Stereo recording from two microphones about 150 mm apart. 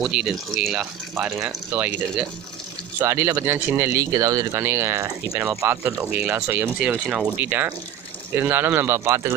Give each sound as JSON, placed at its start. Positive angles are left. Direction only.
{"t": 0.0, "sound": "speech", "side_deg": -5}